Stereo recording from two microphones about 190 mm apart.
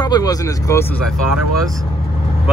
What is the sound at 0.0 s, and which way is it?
Speech, 20° left (ahead or behind).